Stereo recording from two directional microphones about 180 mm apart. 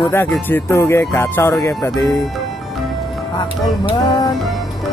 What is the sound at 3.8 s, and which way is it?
Music, 20° left (ahead or behind).